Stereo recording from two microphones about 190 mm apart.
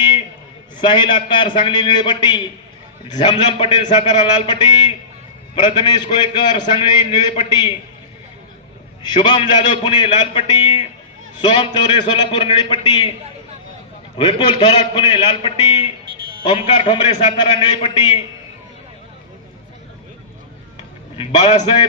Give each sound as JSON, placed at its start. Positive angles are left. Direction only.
{"t": 0.7, "sound": "a man's voice", "side_deg": 25}
{"t": 9.0, "sound": "a man's voice", "side_deg": 25}
{"t": 14.1, "sound": "a man's voice", "side_deg": 25}
{"t": 21.2, "sound": "a man's voice", "side_deg": 30}